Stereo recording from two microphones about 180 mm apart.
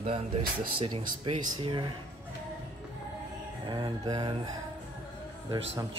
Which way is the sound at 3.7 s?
25° right (ahead or behind).